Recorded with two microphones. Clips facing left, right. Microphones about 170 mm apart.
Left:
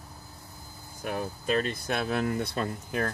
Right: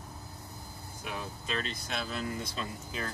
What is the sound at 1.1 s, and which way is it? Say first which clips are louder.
Speech: left 8 dB; 50° left (ahead or behind).